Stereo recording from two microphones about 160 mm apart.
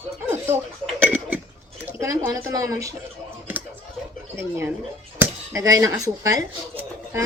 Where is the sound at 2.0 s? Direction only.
20° right (ahead or behind).